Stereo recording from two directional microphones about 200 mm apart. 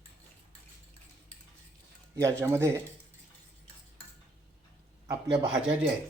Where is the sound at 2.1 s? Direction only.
15° right (ahead or behind).